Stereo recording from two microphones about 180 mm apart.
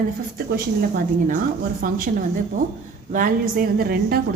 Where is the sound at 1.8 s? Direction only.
50° right (ahead or behind).